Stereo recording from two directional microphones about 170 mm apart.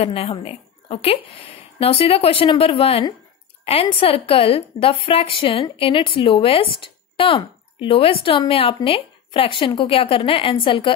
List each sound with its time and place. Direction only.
0.0 s a woman's voice: 35° left (ahead or behind)